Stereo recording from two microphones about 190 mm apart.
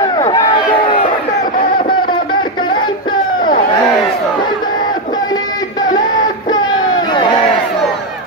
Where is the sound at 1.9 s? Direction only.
25° left (ahead or behind).